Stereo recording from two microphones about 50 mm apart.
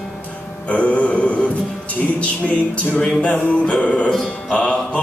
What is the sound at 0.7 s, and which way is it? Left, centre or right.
Music, left.